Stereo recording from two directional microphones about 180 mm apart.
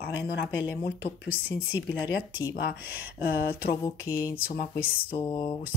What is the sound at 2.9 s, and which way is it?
Speech, 55° left (ahead or behind).